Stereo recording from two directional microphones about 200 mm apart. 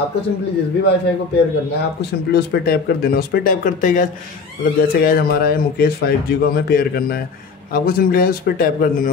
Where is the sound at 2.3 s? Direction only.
55° left (ahead or behind).